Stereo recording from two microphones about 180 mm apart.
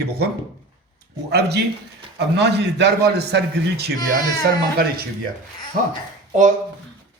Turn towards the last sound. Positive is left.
turn(degrees=-45)  # may be behind; listen again after turning